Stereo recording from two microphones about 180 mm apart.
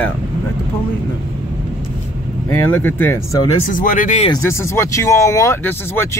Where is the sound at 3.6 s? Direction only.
50° left (ahead or behind).